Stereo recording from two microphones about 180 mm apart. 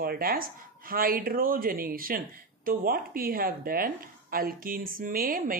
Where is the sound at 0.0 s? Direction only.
55° right (ahead or behind).